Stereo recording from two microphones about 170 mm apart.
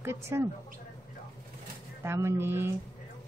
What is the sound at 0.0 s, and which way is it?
Speech, 15° right (ahead or behind).